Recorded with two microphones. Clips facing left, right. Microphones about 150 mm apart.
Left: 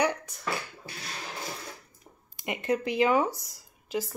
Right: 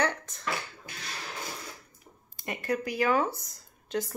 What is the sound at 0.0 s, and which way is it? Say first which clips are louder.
Beatboxing: left 2 dB; 10° left (ahead or behind).